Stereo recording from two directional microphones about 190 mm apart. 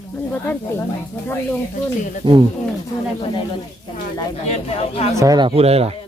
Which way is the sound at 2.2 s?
25° right (ahead or behind).